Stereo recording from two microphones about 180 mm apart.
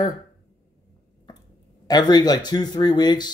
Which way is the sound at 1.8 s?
20° left (ahead or behind).